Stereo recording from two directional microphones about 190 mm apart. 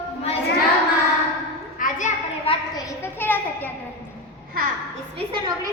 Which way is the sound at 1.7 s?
45° left (ahead or behind).